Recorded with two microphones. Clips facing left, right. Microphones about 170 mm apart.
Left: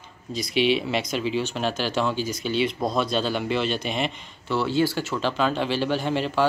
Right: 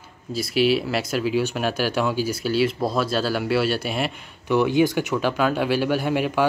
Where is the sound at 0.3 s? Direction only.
5° right (ahead or behind).